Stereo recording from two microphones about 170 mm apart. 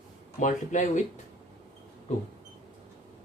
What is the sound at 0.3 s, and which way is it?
Speech, 45° left (ahead or behind).